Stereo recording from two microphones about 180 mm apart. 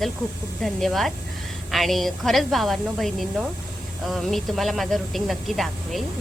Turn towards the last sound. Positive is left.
turn(degrees=0)  # may be behind; listen again after turning